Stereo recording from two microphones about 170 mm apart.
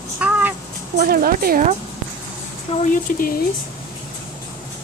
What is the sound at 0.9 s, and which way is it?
Speech, 55° right (ahead or behind).